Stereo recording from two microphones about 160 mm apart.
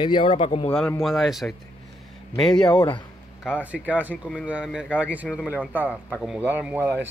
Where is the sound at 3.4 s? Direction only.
5° right (ahead or behind).